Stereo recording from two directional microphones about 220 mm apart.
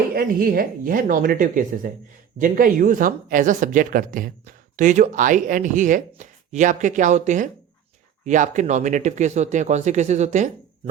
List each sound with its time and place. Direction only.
0.1 s speech: 40° right (ahead or behind)